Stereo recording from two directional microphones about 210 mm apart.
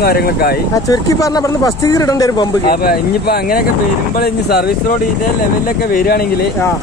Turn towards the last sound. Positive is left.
turn(degrees=45)  # may be behind; listen again after turning